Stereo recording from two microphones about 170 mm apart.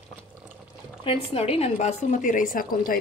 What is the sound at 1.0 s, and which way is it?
A woman's voice, 35° left (ahead or behind).